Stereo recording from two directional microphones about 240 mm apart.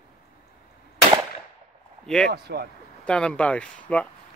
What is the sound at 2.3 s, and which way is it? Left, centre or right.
Speech, right.